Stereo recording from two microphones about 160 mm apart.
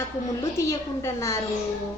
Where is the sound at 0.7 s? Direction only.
15° left (ahead or behind).